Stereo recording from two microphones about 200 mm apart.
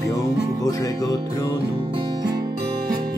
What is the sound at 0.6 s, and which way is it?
Music, 15° left (ahead or behind).